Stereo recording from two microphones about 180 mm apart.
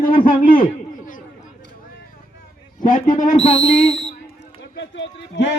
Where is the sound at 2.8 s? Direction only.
45° left (ahead or behind).